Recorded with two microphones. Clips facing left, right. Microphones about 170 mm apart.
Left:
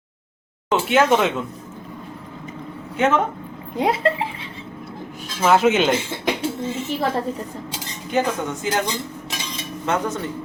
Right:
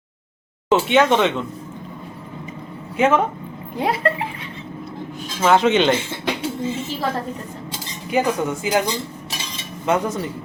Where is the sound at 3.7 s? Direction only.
25° left (ahead or behind).